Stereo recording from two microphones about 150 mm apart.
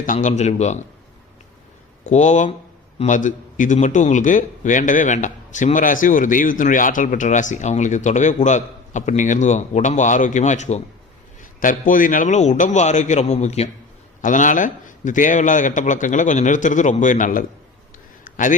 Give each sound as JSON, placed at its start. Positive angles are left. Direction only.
{"t": 0.0, "sound": "a man's voice", "side_deg": 60}
{"t": 2.0, "sound": "a man's voice", "side_deg": 50}
{"t": 11.6, "sound": "a man's voice", "side_deg": 65}
{"t": 14.2, "sound": "a man's voice", "side_deg": 60}
{"t": 18.3, "sound": "a sound", "side_deg": 60}